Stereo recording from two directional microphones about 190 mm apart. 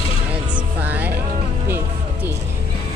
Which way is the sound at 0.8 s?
10° right (ahead or behind).